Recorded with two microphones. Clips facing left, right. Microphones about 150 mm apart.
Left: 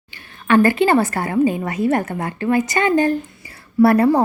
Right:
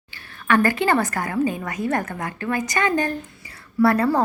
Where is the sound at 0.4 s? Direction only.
20° left (ahead or behind).